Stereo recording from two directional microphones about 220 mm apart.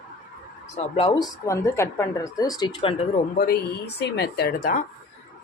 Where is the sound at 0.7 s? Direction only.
25° left (ahead or behind).